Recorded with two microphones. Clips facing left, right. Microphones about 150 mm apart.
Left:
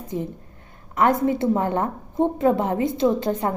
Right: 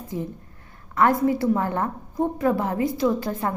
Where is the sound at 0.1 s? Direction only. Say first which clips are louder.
Left 2 dB; 20° left (ahead or behind).